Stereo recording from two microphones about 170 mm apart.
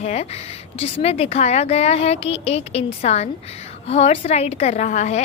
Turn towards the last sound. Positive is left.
turn(degrees=40)  # may be behind; listen again after turning